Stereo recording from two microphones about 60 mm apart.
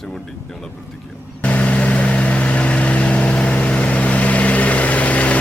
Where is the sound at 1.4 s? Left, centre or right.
Left.